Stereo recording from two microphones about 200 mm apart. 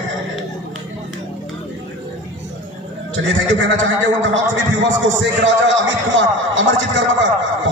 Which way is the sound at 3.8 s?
70° right (ahead or behind).